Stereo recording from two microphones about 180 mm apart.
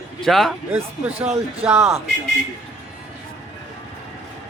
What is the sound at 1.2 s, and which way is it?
Speech, 35° right (ahead or behind).